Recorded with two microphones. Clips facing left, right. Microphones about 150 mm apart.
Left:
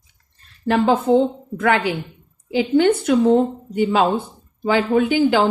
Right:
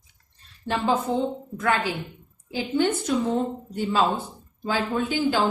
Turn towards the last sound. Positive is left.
turn(degrees=70)  # may be behind; listen again after turning